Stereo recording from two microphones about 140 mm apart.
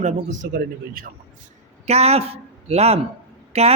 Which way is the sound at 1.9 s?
50° right (ahead or behind).